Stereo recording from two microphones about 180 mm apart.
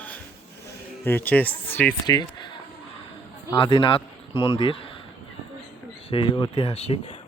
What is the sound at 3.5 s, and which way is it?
Speech, 25° left (ahead or behind).